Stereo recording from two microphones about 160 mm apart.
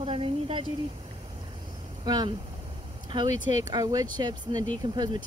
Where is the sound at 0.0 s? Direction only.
35° right (ahead or behind).